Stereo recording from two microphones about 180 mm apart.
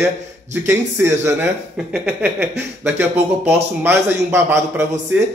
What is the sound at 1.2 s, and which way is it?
A man's voice, 10° right (ahead or behind).